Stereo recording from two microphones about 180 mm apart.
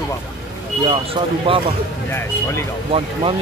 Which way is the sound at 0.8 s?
30° right (ahead or behind).